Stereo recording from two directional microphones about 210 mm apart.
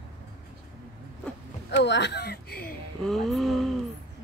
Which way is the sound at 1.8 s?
55° left (ahead or behind).